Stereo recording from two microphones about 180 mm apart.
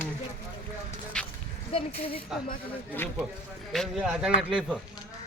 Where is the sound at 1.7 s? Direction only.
30° left (ahead or behind).